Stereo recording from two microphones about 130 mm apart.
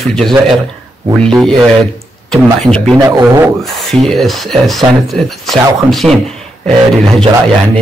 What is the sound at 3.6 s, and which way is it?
Speech, centre (ahead or behind).